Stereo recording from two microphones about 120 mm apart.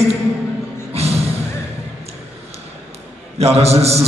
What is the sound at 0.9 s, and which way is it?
Music, 60° right (ahead or behind).